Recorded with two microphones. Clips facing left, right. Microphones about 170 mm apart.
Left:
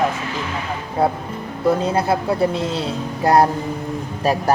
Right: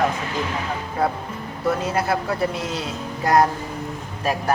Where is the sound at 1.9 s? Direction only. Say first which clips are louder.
Left 4 dB; 25° left (ahead or behind).